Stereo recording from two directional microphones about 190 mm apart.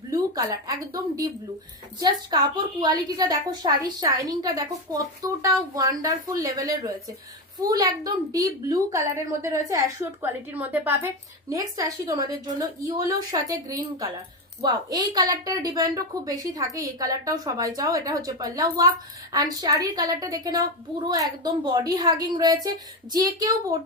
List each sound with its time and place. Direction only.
0.1 s a woman's voice: 20° right (ahead or behind)